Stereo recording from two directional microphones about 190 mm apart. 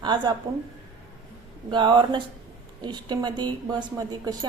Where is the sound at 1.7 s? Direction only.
25° right (ahead or behind).